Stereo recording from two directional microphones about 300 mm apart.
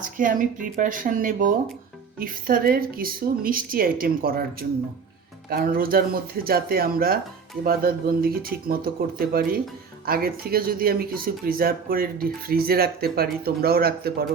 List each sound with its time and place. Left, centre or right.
0.0 s speech: right
5.5 s speech: right